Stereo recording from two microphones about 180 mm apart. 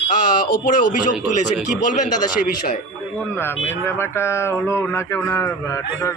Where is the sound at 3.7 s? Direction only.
15° left (ahead or behind).